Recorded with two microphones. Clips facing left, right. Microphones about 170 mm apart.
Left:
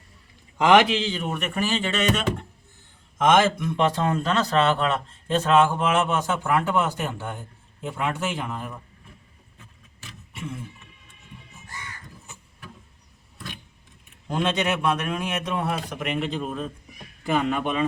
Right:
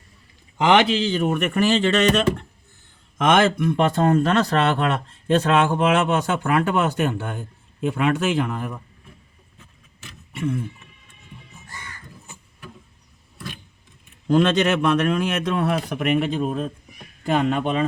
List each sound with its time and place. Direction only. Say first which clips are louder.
0.6 s a man's voice: even; 30° right (ahead or behind); by 8.7 s 65° right (ahead or behind)
10.3 s a sound: right 10 dB; 60° right (ahead or behind)
14.3 s a man's voice: right 7 dB; 90° right; by 16.6 s 50° right (ahead or behind)
17.5 s speech: right 3 dB; 35° right (ahead or behind)